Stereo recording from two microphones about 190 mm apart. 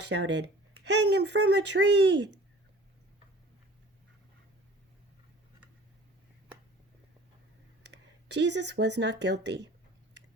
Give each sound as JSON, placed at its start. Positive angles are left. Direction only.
{"t": 0.0, "sound": "speech", "side_deg": -65}
{"t": 7.9, "sound": "speech", "side_deg": -65}